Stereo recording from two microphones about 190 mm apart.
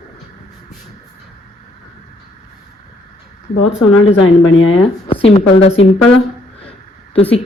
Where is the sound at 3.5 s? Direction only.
85° left.